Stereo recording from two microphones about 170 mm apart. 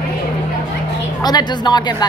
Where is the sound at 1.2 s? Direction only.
25° left (ahead or behind).